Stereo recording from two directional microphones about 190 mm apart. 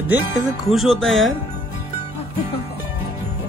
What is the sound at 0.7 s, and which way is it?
Speech, centre (ahead or behind).